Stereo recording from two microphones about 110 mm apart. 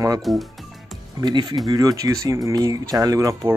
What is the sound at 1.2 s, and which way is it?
Speech, 45° right (ahead or behind).